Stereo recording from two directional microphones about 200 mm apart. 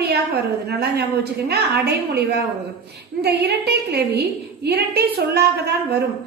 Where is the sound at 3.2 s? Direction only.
55° right (ahead or behind).